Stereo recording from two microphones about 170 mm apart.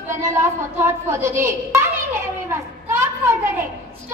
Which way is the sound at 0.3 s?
15° right (ahead or behind).